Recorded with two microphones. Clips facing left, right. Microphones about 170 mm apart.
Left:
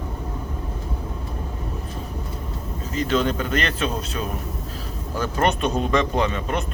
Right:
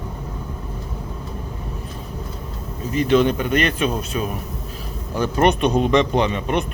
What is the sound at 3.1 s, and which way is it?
Speech, 15° right (ahead or behind).